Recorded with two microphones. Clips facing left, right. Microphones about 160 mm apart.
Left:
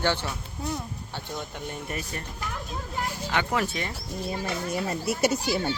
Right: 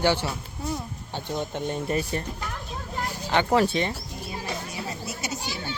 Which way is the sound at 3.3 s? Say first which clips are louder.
Right 7 dB; 30° right (ahead or behind).